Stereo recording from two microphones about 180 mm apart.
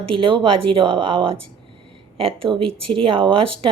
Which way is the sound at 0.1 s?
30° right (ahead or behind).